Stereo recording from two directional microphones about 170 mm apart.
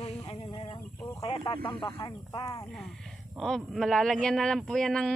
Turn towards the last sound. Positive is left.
turn(degrees=5)  # may be behind; listen again after turning